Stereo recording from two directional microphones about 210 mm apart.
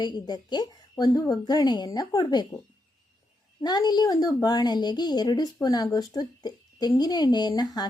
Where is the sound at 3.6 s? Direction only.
20° left (ahead or behind).